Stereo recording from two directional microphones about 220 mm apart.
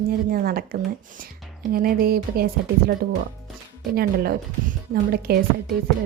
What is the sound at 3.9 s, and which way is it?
Speech, 45° right (ahead or behind).